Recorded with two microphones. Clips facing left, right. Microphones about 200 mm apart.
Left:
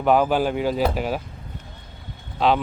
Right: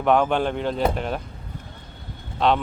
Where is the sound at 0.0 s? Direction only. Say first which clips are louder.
Left 1 dB; 5° left (ahead or behind).